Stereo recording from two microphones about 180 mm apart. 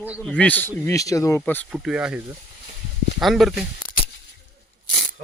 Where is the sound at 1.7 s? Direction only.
5° right (ahead or behind).